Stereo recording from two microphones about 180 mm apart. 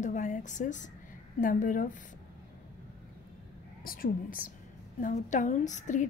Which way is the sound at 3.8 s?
55° left (ahead or behind).